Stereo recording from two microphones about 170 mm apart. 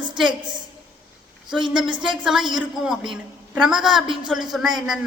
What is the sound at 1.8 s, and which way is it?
Speech, 30° right (ahead or behind).